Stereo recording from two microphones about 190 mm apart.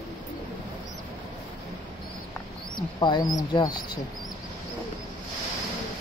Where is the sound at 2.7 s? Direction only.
25° left (ahead or behind).